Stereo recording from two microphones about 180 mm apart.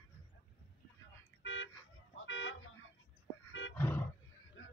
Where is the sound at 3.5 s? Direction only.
90° left.